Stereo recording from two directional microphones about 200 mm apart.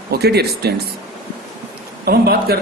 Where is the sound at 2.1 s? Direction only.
50° right (ahead or behind).